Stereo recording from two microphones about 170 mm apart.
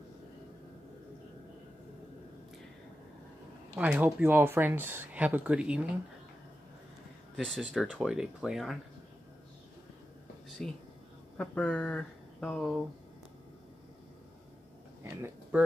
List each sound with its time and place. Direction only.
3.7 s speech: 10° right (ahead or behind)
7.3 s speech: centre (ahead or behind)
10.6 s speech: 5° left (ahead or behind)